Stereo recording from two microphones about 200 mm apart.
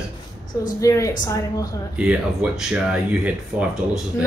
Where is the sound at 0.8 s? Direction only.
15° left (ahead or behind).